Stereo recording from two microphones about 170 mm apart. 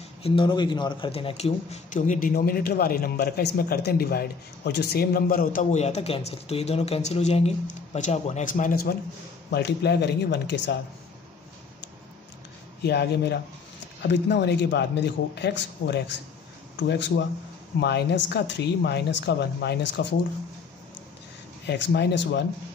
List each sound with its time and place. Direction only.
0.2 s a man's voice: 30° left (ahead or behind); by 8.9 s 55° left (ahead or behind)
9.5 s speech: 75° left (ahead or behind)
12.8 s a man's voice: 75° left (ahead or behind)
14.0 s speech: 90° left
21.6 s speech: 85° left